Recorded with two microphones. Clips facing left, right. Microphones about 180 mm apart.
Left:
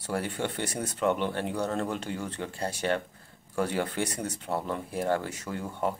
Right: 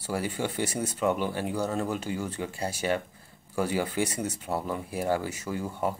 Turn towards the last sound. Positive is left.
turn(degrees=-5)  # may be behind; listen again after turning